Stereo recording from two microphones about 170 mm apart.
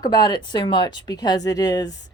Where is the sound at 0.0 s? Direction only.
25° left (ahead or behind).